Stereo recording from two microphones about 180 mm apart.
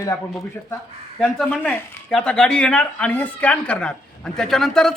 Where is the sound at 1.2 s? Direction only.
5° left (ahead or behind).